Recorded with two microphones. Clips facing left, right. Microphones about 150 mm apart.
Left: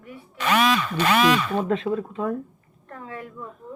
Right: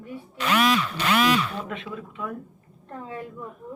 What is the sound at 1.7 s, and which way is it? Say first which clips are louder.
Speech: left 11 dB; 35° left (ahead or behind).